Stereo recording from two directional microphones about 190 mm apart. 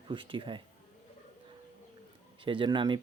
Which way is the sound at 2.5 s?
25° right (ahead or behind).